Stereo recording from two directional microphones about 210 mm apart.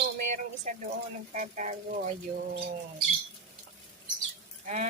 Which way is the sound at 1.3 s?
35° right (ahead or behind).